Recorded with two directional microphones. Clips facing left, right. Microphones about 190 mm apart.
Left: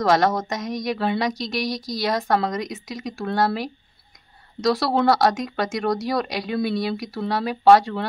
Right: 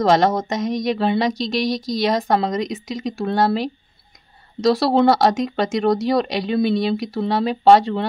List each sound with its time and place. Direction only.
0.0 s speech: 25° right (ahead or behind)